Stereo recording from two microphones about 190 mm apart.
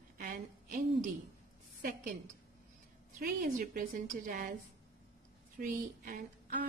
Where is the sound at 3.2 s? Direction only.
50° right (ahead or behind).